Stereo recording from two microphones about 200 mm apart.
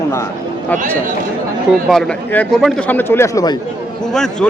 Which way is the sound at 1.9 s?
5° left (ahead or behind).